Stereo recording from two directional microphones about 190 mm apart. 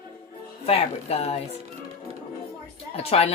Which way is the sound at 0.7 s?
30° left (ahead or behind).